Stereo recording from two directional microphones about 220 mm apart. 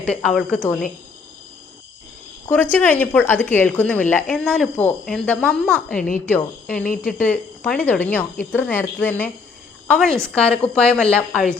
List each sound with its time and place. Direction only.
0.0 s a woman's voice: 5° left (ahead or behind)
2.7 s a woman's voice: 5° left (ahead or behind)
6.8 s speech: 40° left (ahead or behind)
7.2 s a woman's voice: 5° left (ahead or behind)